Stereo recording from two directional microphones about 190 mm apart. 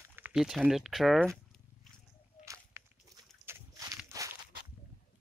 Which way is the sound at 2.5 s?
15° right (ahead or behind).